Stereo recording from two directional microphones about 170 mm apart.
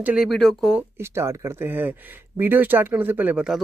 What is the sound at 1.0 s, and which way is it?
Speech, 15° right (ahead or behind).